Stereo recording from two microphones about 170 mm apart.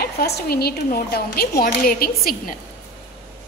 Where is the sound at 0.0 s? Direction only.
65° left (ahead or behind).